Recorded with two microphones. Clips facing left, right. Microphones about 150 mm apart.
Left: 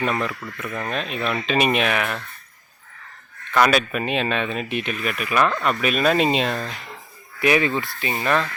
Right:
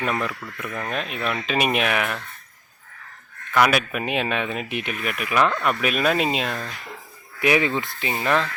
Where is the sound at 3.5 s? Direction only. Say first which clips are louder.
Left 1 dB; 10° right (ahead or behind).